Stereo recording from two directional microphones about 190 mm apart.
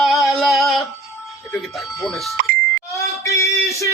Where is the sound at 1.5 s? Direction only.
Centre (ahead or behind).